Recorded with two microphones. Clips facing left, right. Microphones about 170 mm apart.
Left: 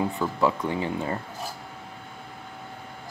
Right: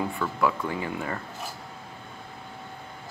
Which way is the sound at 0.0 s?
25° left (ahead or behind).